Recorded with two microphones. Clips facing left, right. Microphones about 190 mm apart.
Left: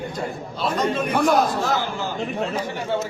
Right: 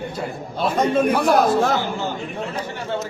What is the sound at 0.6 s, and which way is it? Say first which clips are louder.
A man's voice: right 4 dB; 50° right (ahead or behind).